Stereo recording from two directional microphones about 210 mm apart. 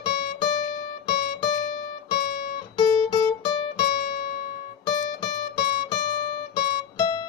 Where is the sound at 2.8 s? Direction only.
20° left (ahead or behind).